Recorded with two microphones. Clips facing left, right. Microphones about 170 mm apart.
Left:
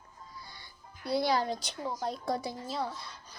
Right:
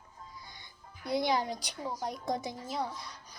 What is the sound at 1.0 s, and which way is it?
Speech, 20° right (ahead or behind).